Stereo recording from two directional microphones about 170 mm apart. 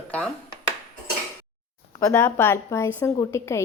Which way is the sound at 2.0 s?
10° left (ahead or behind).